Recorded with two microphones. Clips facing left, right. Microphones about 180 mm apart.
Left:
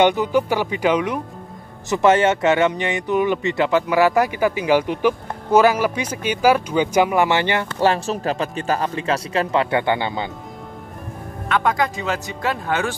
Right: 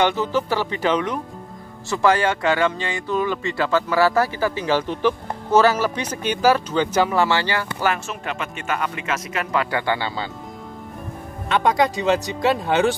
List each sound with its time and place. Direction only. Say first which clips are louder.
0.0 s speech: left 4 dB; 15° left (ahead or behind)
1.9 s speech: left 3 dB; 20° left (ahead or behind)
11.4 s speech: right 1 dB; 20° right (ahead or behind)